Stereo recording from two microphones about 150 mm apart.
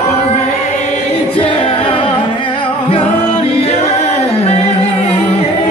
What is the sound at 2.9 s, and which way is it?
Music, 40° left (ahead or behind).